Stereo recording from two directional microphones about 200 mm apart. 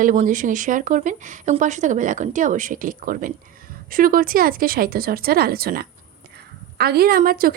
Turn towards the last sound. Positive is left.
turn(degrees=-45)  # may be behind; listen again after turning